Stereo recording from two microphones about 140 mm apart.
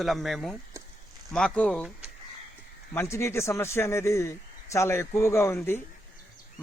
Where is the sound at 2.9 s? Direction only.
20° left (ahead or behind).